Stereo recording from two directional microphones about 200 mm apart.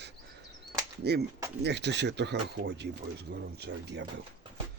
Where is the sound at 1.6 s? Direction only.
60° right (ahead or behind).